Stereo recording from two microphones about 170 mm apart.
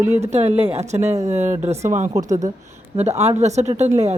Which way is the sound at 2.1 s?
20° right (ahead or behind).